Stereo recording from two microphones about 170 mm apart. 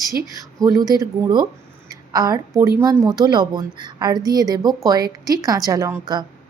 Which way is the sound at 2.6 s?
15° right (ahead or behind).